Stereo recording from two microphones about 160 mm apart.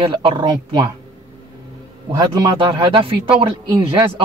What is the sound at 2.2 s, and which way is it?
A man's voice, 25° right (ahead or behind).